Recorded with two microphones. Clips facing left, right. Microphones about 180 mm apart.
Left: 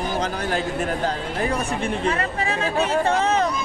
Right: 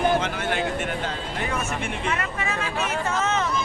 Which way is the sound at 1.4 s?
35° left (ahead or behind).